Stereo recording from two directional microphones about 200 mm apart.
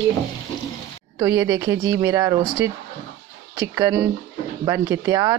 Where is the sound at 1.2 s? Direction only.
20° right (ahead or behind).